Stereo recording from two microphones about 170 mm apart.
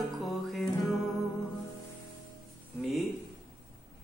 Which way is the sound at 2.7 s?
Centre (ahead or behind).